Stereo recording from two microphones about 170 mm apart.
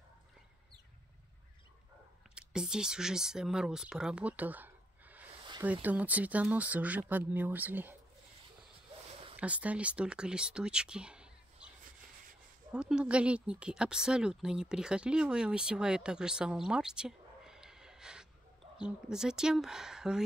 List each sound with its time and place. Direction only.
2.3 s speech: 5° right (ahead or behind)
9.4 s speech: 10° right (ahead or behind)
12.7 s speech: 5° right (ahead or behind)